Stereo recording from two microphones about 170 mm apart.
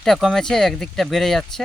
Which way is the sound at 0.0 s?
Centre (ahead or behind).